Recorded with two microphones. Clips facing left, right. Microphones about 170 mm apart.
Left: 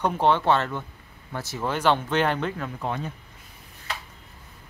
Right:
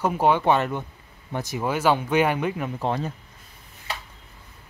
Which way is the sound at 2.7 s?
35° right (ahead or behind).